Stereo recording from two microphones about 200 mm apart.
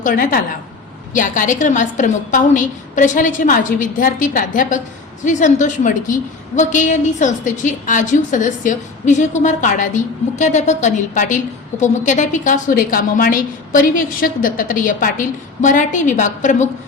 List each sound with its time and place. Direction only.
0.0 s a woman's voice: 45° left (ahead or behind)